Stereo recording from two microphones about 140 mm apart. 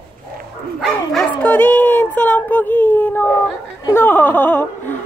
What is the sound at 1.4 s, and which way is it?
Speech, 10° left (ahead or behind).